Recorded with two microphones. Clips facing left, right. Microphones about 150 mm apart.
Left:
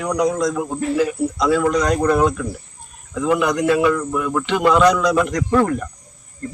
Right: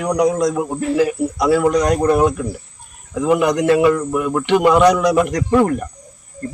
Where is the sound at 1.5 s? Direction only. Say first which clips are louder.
Right 3 dB; 15° right (ahead or behind).